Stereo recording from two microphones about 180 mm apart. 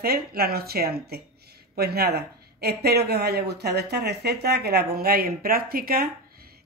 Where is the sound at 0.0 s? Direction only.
60° right (ahead or behind).